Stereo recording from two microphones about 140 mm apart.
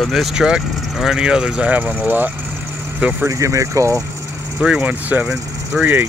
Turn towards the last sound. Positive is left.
turn(degrees=-15)  # may be behind; listen again after turning